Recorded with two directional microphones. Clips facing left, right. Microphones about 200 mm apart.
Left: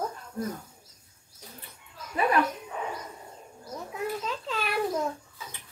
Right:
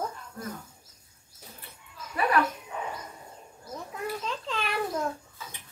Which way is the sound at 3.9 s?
5° left (ahead or behind).